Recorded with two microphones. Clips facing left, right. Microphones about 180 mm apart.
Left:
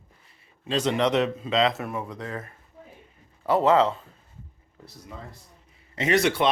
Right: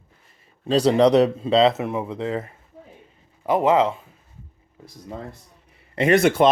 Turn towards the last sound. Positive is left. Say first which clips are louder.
# right 6 dB
turn(degrees=-50)  # may be behind; listen again after turning